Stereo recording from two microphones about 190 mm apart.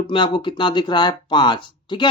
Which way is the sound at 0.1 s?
25° left (ahead or behind).